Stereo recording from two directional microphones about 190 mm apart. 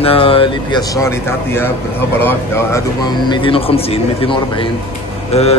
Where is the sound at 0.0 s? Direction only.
30° left (ahead or behind); by 2.8 s 10° left (ahead or behind).